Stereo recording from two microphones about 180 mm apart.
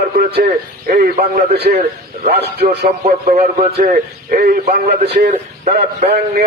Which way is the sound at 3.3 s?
45° right (ahead or behind).